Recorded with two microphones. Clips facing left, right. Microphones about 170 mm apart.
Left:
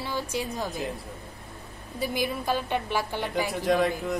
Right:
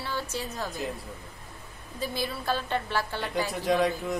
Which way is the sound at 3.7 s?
Centre (ahead or behind).